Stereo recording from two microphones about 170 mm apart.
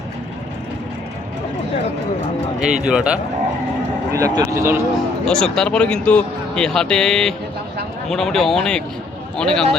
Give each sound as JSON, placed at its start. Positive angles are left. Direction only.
{"t": 2.6, "sound": "speech", "side_deg": -5}
{"t": 4.1, "sound": "speech", "side_deg": -20}
{"t": 5.2, "sound": "speech", "side_deg": 5}